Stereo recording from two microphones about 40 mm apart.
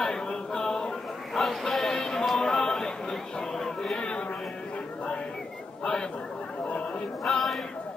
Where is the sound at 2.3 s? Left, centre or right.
Centre.